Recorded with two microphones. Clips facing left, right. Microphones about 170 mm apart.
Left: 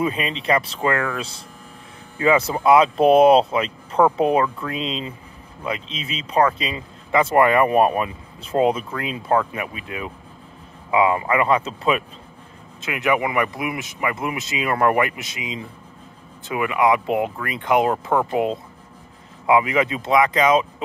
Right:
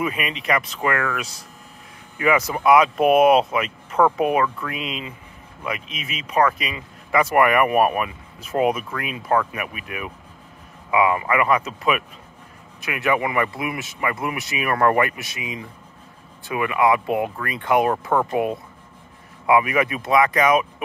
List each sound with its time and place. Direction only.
0.0 s speech: 30° left (ahead or behind)